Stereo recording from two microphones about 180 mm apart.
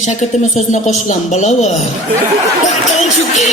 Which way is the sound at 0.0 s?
40° left (ahead or behind).